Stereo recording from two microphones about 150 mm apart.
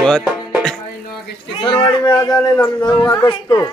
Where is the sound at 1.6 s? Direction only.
30° left (ahead or behind).